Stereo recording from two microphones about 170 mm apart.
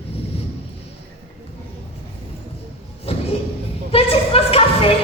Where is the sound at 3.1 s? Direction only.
35° left (ahead or behind).